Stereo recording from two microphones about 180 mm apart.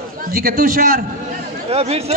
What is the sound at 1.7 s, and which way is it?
Speech, 35° right (ahead or behind).